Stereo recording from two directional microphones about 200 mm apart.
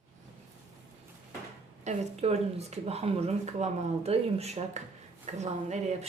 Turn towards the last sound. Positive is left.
turn(degrees=-35)  # may be behind; listen again after turning